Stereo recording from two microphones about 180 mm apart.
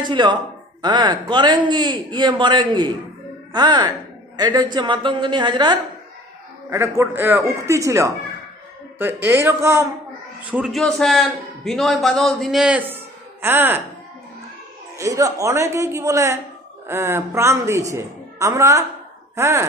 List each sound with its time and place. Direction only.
0.0 s a man's voice: 25° right (ahead or behind)
10.5 s a man's voice: centre (ahead or behind)
15.0 s a woman's voice: 20° right (ahead or behind)